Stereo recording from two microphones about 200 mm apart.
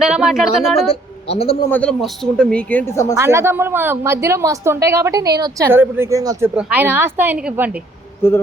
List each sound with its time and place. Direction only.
0.0 s speech: centre (ahead or behind)
0.9 s a woman's voice: 30° left (ahead or behind)
1.7 s speech: 5° left (ahead or behind)
3.2 s a woman's voice: 15° right (ahead or behind)